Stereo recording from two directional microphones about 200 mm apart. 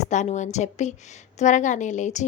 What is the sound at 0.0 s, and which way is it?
A woman's voice, 35° left (ahead or behind).